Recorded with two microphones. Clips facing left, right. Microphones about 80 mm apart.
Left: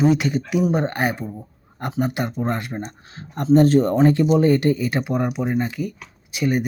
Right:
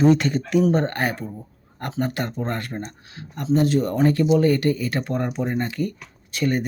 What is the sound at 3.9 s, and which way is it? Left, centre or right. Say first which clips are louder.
Speech: left 2 dB; left.